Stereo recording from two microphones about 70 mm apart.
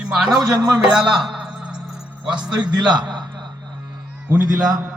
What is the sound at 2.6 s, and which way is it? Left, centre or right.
Speech, right.